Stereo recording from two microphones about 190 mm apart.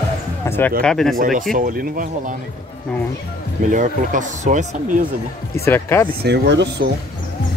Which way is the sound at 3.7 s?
40° right (ahead or behind).